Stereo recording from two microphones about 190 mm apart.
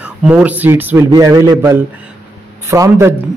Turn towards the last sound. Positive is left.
turn(degrees=-15)  # may be behind; listen again after turning